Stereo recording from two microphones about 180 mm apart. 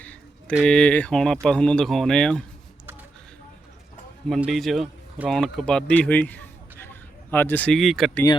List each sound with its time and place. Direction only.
0.0 s a sound: 5° left (ahead or behind)
0.5 s speech: 5° left (ahead or behind)
4.3 s a man's voice: centre (ahead or behind)